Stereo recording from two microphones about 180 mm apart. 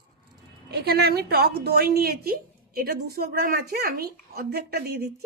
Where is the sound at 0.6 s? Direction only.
60° right (ahead or behind).